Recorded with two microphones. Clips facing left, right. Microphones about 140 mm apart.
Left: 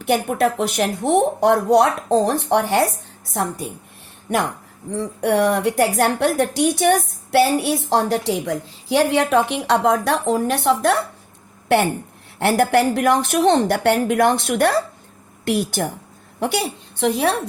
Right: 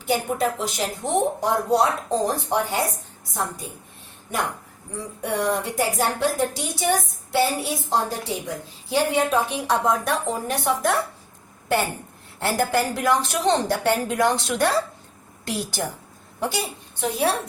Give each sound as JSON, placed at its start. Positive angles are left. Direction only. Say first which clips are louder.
{"t": 0.0, "sound": "a woman's voice", "louder": "left 5 dB", "side_deg": 65}
{"t": 4.3, "sound": "a woman's voice", "louder": "left 6 dB", "side_deg": 75}
{"t": 12.4, "sound": "a woman's voice", "louder": "left 6 dB", "side_deg": 65}